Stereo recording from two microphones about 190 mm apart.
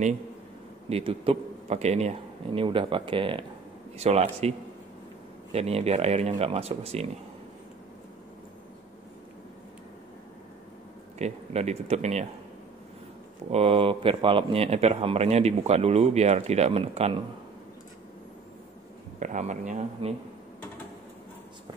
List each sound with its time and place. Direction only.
0.8 s a man's voice: 30° right (ahead or behind)
11.1 s a man's voice: 35° right (ahead or behind)
13.5 s a man's voice: 30° right (ahead or behind)
19.1 s a man's voice: 40° right (ahead or behind)